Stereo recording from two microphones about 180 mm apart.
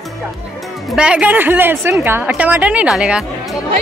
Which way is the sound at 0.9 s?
5° right (ahead or behind).